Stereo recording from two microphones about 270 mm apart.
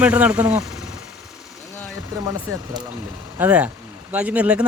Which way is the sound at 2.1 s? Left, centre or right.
Centre.